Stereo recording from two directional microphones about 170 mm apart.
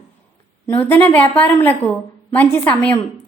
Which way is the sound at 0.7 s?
10° left (ahead or behind).